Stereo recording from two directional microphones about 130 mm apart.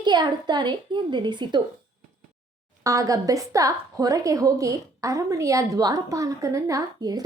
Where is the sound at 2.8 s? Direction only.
25° right (ahead or behind).